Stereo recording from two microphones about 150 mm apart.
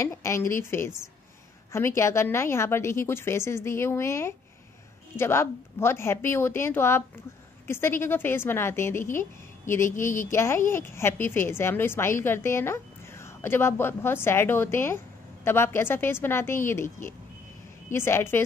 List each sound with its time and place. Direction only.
0.0 s a woman's voice: 20° left (ahead or behind)